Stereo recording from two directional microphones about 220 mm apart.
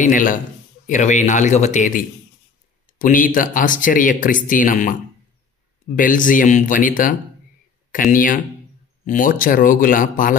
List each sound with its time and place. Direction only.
0.0 s speech: 35° left (ahead or behind)
5.9 s speech: 35° left (ahead or behind)